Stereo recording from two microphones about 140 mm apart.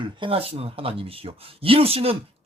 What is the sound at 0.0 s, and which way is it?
Speech, 40° right (ahead or behind).